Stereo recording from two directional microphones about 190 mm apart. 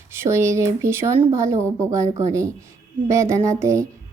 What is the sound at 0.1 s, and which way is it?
A woman's voice, 15° right (ahead or behind).